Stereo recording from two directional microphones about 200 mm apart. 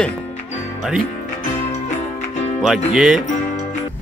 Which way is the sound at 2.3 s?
35° left (ahead or behind).